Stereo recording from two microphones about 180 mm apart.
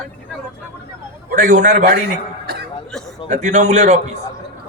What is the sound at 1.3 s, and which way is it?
Speech, 45° right (ahead or behind).